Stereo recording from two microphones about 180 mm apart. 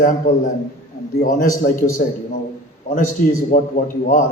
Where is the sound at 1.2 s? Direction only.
50° left (ahead or behind).